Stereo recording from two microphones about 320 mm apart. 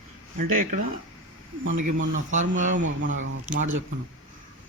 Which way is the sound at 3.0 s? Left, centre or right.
Right.